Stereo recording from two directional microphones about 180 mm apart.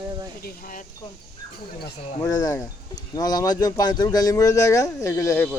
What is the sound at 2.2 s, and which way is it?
A man's voice, 20° left (ahead or behind).